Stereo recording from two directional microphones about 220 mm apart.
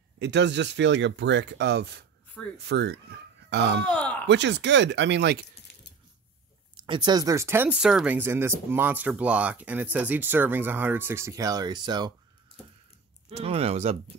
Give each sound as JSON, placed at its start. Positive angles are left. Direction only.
{"t": 0.2, "sound": "speech", "side_deg": -55}
{"t": 3.8, "sound": "speech", "side_deg": 5}
{"t": 4.3, "sound": "speech", "side_deg": -55}
{"t": 6.8, "sound": "speech", "side_deg": -20}
{"t": 13.3, "sound": "speech", "side_deg": -30}